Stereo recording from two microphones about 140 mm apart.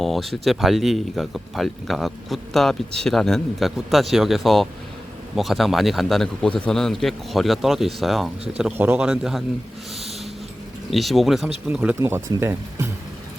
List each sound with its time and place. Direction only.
0.0 s speech: centre (ahead or behind)
10.9 s speech: centre (ahead or behind)
11.9 s speech: 20° right (ahead or behind)